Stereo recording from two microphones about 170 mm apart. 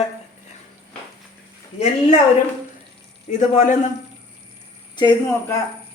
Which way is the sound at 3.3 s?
50° left (ahead or behind).